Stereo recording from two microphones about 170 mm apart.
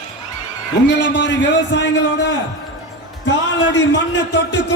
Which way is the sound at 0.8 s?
90° left.